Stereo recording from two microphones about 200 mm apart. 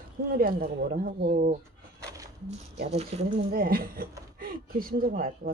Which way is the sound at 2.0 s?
15° right (ahead or behind).